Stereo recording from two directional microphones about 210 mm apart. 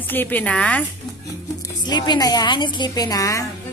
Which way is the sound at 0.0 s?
10° left (ahead or behind).